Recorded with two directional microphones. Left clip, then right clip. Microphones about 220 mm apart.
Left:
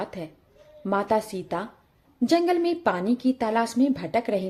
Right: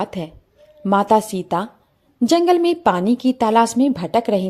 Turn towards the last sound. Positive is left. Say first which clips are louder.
# right 7 dB
turn(degrees=-35)  # may be behind; listen again after turning